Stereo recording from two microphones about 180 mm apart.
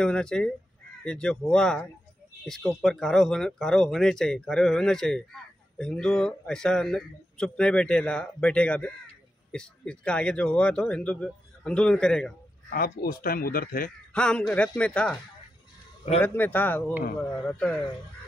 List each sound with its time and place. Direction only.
0.0 s speech: 5° left (ahead or behind)
12.6 s speech: 55° left (ahead or behind)
14.1 s speech: 5° left (ahead or behind)
16.2 s a man's voice: 10° left (ahead or behind)